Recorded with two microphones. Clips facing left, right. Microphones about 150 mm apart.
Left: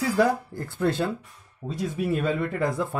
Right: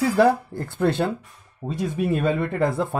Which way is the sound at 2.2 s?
25° right (ahead or behind).